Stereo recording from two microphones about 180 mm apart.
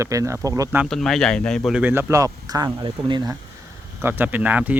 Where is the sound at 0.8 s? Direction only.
Centre (ahead or behind); by 3.3 s 25° right (ahead or behind).